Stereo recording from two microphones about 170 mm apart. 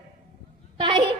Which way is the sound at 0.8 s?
25° right (ahead or behind).